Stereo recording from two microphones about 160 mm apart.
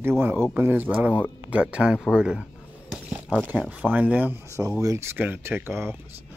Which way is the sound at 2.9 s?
5° right (ahead or behind).